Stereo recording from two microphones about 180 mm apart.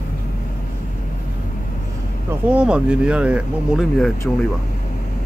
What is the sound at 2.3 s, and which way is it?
Speech, 5° right (ahead or behind).